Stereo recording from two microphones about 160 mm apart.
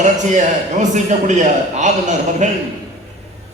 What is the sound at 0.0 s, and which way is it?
A man's voice, 50° right (ahead or behind).